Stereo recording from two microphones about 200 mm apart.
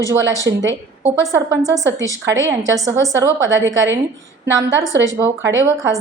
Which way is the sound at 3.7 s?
65° right (ahead or behind).